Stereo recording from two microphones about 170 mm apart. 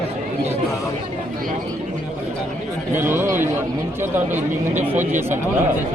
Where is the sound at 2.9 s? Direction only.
15° right (ahead or behind).